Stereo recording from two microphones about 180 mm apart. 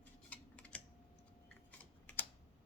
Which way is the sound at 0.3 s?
5° left (ahead or behind).